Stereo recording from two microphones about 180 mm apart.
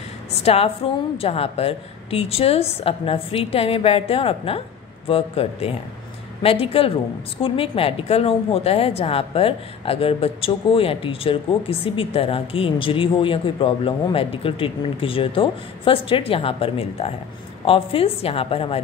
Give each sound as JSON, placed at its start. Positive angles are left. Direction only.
{"t": 0.3, "sound": "a woman's voice", "side_deg": 35}